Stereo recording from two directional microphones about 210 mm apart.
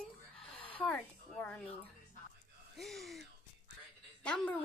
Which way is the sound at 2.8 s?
Centre (ahead or behind).